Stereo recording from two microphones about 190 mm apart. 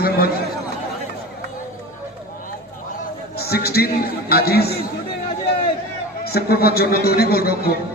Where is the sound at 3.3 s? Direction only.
55° left (ahead or behind).